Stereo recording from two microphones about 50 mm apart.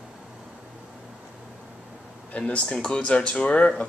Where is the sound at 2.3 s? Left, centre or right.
Left.